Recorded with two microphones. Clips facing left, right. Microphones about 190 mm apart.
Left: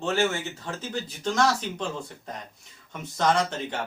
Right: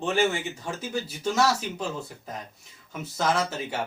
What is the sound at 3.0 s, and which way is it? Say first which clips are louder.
Speech: left 2 dB; 5° right (ahead or behind).